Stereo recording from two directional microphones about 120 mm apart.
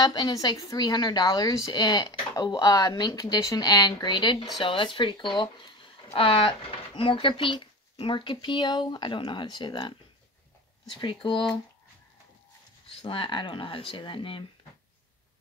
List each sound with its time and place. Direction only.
0.0 s speech: 35° left (ahead or behind)
13.0 s speech: 45° left (ahead or behind)